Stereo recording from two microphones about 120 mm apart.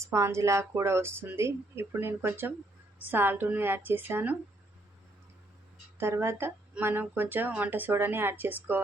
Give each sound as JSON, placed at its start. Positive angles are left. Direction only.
{"t": 0.0, "sound": "speech", "side_deg": -25}
{"t": 6.0, "sound": "speech", "side_deg": -20}